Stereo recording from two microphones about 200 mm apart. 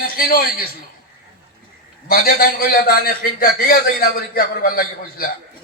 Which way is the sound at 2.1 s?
50° left (ahead or behind).